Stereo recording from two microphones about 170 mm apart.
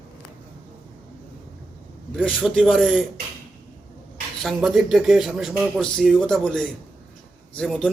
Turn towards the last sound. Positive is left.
turn(degrees=0)  # may be behind; listen again after turning